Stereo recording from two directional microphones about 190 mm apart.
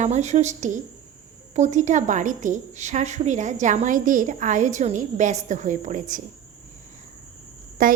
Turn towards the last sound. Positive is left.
turn(degrees=-45)  # may be behind; listen again after turning